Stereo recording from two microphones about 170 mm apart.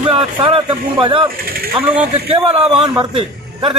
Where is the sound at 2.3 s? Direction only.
30° right (ahead or behind).